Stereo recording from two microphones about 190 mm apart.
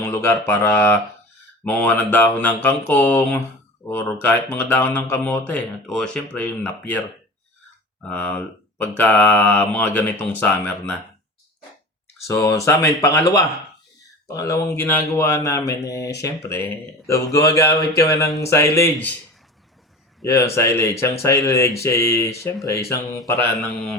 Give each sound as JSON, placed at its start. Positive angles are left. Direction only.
{"t": 0.0, "sound": "speech", "side_deg": 10}
{"t": 8.0, "sound": "speech", "side_deg": 10}
{"t": 12.3, "sound": "speech", "side_deg": 15}
{"t": 20.2, "sound": "speech", "side_deg": 15}